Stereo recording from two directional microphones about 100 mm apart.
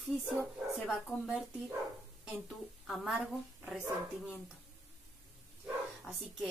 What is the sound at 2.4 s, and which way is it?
A woman's voice, 5° right (ahead or behind).